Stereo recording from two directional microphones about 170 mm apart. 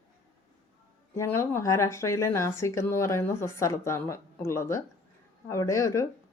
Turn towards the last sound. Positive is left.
turn(degrees=15)  # may be behind; listen again after turning